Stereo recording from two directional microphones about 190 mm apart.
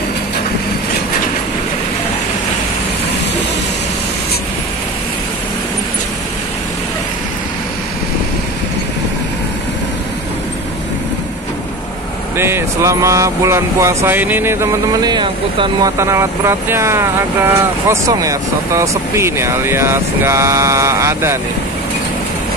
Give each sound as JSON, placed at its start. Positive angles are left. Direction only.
{"t": 12.4, "sound": "speech", "side_deg": -15}
{"t": 16.0, "sound": "speech", "side_deg": -15}